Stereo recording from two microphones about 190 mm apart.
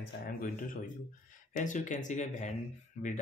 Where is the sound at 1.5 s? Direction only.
40° left (ahead or behind).